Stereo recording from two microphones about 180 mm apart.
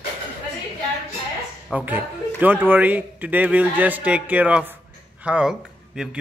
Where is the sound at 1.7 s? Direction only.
10° right (ahead or behind).